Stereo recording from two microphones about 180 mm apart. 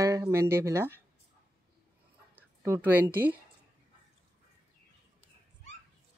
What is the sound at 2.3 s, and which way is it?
Speech, 15° right (ahead or behind).